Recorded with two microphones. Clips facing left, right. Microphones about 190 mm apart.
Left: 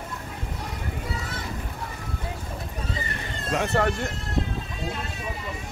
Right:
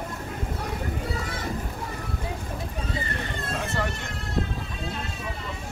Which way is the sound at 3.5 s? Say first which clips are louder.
Left 7 dB; 65° left (ahead or behind).